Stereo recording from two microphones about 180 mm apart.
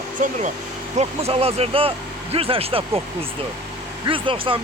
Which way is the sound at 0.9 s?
35° right (ahead or behind).